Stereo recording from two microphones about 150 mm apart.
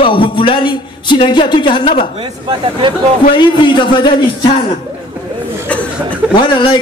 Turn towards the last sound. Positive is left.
turn(degrees=30)  # may be behind; listen again after turning